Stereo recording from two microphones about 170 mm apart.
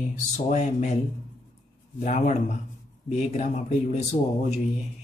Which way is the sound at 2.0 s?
45° left (ahead or behind).